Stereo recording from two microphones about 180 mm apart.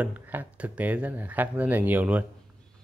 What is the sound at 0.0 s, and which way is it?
Speech, 10° right (ahead or behind).